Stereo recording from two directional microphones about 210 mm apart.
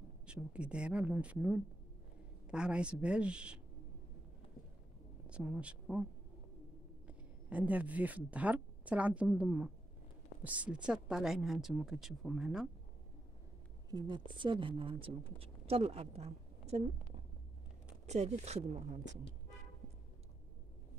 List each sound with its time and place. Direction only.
0.3 s speech: 5° right (ahead or behind)
5.2 s speech: 5° right (ahead or behind)
7.1 s speech: 5° right (ahead or behind)
13.9 s a woman's voice: 20° right (ahead or behind)